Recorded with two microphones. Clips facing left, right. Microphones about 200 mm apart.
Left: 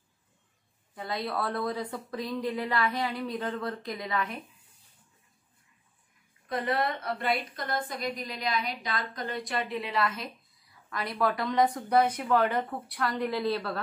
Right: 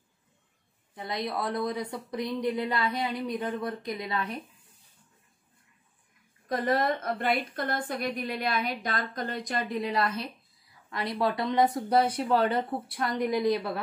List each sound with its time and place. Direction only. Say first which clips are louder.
0.9 s speech: even; 20° right (ahead or behind)
4.1 s speech: left 2 dB; 30° right (ahead or behind)
6.5 s a woman's voice: right 3 dB; 40° right (ahead or behind)
10.9 s speech: right 1 dB; 20° right (ahead or behind)